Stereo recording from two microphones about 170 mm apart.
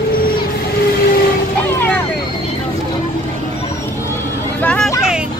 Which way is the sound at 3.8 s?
15° left (ahead or behind).